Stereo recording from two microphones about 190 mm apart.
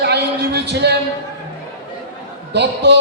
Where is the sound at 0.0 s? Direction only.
60° right (ahead or behind).